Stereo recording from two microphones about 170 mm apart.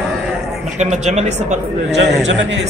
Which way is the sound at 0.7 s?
45° right (ahead or behind).